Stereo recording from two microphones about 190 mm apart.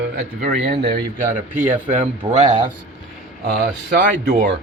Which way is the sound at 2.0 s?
35° right (ahead or behind).